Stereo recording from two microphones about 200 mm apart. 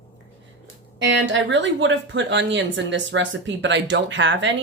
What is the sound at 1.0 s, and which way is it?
Speech, 65° right (ahead or behind).